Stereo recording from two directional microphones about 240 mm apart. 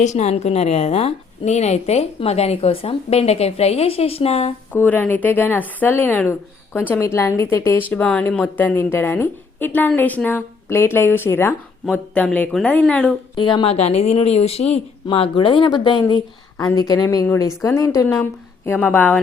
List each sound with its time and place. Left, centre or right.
0.0 s a woman's voice: left
4.7 s speech: centre
13.3 s a woman's voice: left